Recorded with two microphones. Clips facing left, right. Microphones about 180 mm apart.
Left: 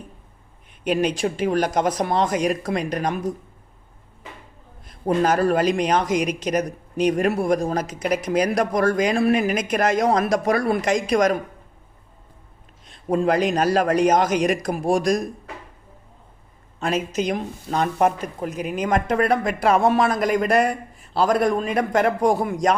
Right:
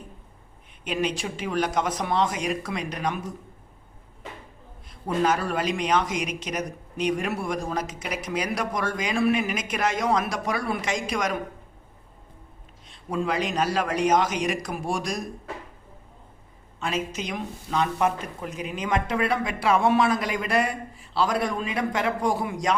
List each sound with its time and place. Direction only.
0.9 s speech: 45° left (ahead or behind)
4.9 s speech: 45° left (ahead or behind)
12.9 s speech: 45° left (ahead or behind)
16.8 s speech: 45° left (ahead or behind)